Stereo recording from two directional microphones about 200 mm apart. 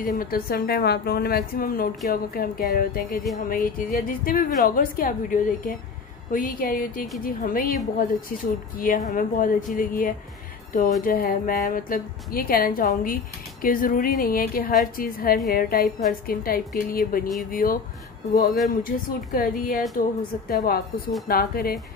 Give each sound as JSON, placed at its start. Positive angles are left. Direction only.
{"t": 0.0, "sound": "a woman's voice", "side_deg": 45}
{"t": 8.7, "sound": "a woman's voice", "side_deg": 45}
{"t": 18.9, "sound": "a woman's voice", "side_deg": 45}